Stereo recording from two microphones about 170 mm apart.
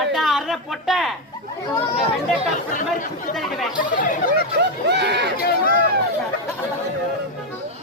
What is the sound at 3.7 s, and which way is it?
Speech, 50° left (ahead or behind).